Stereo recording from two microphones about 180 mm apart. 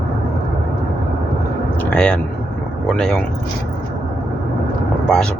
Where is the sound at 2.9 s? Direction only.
5° left (ahead or behind).